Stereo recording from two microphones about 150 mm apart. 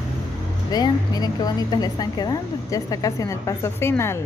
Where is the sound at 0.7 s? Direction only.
25° left (ahead or behind).